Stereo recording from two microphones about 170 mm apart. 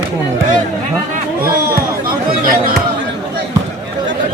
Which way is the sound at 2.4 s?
55° right (ahead or behind).